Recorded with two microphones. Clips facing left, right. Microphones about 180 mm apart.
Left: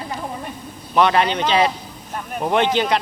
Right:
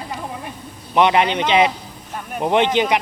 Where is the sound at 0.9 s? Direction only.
20° right (ahead or behind).